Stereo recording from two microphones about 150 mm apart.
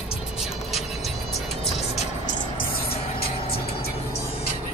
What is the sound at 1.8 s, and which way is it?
Music, 45° left (ahead or behind).